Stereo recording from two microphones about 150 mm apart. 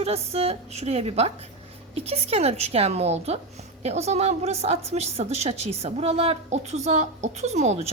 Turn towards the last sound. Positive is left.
turn(degrees=-50)  # may be behind; listen again after turning